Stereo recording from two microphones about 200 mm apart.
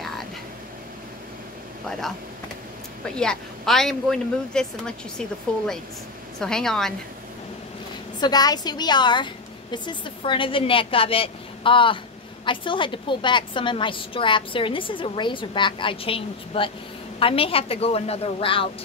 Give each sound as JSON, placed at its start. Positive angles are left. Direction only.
{"t": 1.9, "sound": "a woman's voice", "side_deg": 0}
{"t": 3.2, "sound": "a woman's voice", "side_deg": 5}
{"t": 6.4, "sound": "a woman's voice", "side_deg": 5}
{"t": 8.2, "sound": "a woman's voice", "side_deg": 20}